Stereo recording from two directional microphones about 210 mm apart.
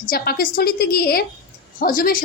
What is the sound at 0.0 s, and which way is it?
A woman's voice, 45° left (ahead or behind).